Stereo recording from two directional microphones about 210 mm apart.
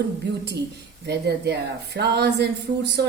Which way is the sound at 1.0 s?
50° right (ahead or behind).